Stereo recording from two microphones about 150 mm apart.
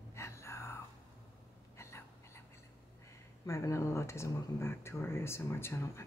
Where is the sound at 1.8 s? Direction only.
20° left (ahead or behind).